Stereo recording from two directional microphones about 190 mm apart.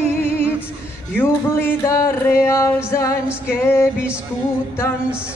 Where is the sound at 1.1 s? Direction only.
15° left (ahead or behind).